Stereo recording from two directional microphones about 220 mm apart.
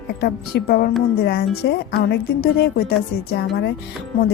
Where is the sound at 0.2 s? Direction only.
45° left (ahead or behind).